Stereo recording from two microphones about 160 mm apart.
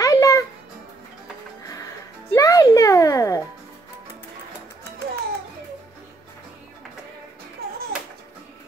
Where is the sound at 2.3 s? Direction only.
20° left (ahead or behind).